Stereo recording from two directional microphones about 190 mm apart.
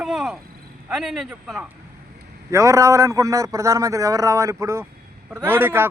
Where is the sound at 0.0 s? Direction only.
Centre (ahead or behind).